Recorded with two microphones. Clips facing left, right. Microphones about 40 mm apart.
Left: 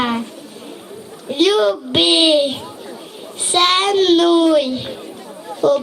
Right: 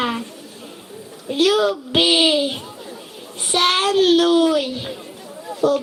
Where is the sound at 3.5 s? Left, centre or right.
Left.